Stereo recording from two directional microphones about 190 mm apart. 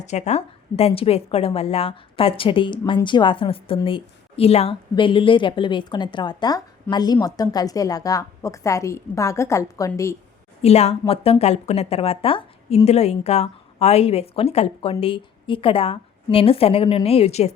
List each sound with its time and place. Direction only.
0.0 s a woman's voice: 35° left (ahead or behind); by 10.2 s 15° left (ahead or behind)
10.6 s a woman's voice: 35° left (ahead or behind)